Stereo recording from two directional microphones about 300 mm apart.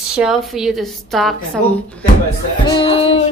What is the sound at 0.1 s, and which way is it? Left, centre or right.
A woman's voice, centre.